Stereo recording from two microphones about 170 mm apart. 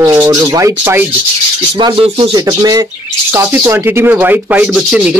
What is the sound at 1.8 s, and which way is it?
Speech, 30° right (ahead or behind).